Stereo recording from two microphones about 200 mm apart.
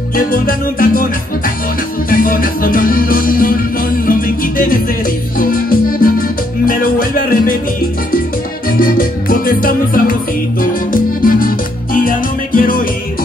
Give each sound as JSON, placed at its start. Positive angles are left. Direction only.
{"t": 0.1, "sound": "music", "side_deg": 45}
{"t": 2.0, "sound": "music", "side_deg": 45}
{"t": 8.6, "sound": "music", "side_deg": 45}